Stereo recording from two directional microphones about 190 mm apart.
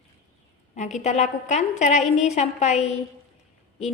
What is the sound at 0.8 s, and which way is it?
A woman's voice, 35° left (ahead or behind).